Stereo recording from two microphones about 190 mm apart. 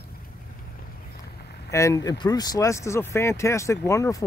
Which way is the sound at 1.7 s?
15° left (ahead or behind).